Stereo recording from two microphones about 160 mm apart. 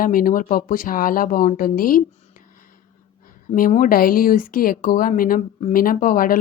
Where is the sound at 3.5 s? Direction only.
55° left (ahead or behind).